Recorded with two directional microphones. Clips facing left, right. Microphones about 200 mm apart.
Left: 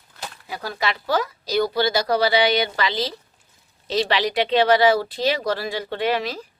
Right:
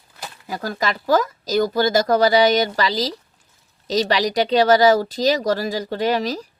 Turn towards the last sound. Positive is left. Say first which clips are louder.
# right 3 dB
turn(degrees=-40)  # may be behind; listen again after turning